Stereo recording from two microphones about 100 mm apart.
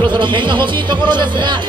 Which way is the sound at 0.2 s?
55° right (ahead or behind).